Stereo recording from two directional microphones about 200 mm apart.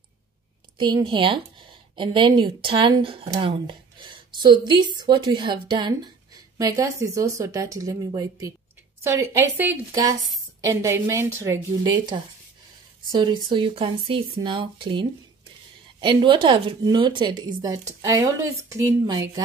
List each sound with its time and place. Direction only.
0.7 s a woman's voice: 25° right (ahead or behind)
13.1 s a woman's voice: 25° right (ahead or behind)